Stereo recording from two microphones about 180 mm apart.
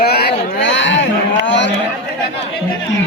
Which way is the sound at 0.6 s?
90° left.